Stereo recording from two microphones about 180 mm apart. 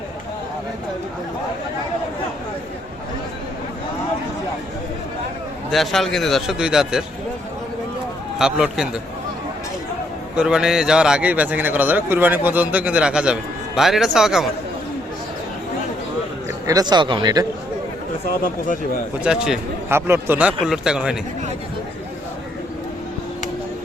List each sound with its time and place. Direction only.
5.7 s a man's voice: centre (ahead or behind)
8.4 s a man's voice: centre (ahead or behind)
10.3 s a man's voice: 5° right (ahead or behind)
16.6 s speech: 20° right (ahead or behind)
19.2 s a man's voice: 5° right (ahead or behind)